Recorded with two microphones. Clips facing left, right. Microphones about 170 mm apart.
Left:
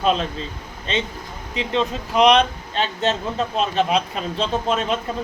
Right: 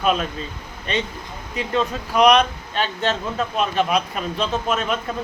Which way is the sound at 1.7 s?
25° left (ahead or behind).